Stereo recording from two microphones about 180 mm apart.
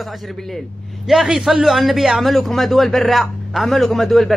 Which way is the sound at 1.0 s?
Centre (ahead or behind).